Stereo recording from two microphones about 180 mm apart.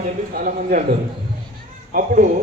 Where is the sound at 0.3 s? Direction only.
45° right (ahead or behind).